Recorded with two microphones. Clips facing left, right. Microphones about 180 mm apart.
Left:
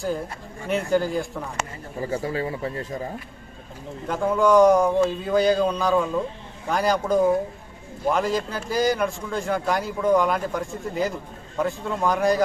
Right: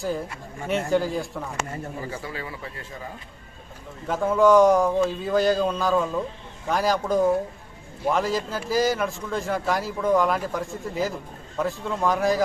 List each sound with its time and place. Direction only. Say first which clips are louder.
0.7 s a man's voice: left 1 dB; centre (ahead or behind)
2.0 s speech: left 7 dB; 40° left (ahead or behind)
4.1 s a man's voice: right 1 dB; centre (ahead or behind)